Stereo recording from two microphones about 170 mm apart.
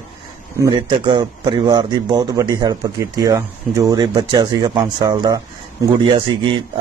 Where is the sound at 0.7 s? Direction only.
30° right (ahead or behind).